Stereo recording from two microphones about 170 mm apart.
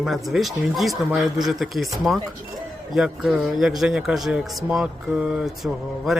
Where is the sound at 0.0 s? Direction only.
Centre (ahead or behind).